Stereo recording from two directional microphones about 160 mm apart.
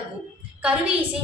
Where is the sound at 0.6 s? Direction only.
10° right (ahead or behind).